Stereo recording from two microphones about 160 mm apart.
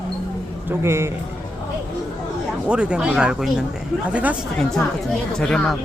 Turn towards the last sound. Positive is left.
turn(degrees=5)  # may be behind; listen again after turning